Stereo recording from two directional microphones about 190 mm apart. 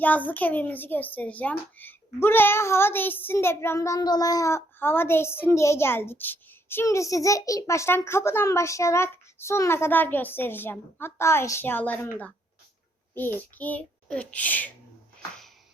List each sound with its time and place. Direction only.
0.0 s child singing: 10° left (ahead or behind)
13.1 s child singing: 10° left (ahead or behind)